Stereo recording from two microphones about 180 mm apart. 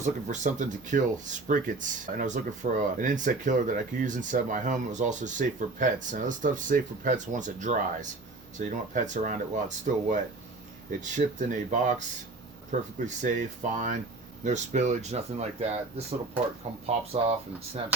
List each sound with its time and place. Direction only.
0.0 s speech: 45° right (ahead or behind)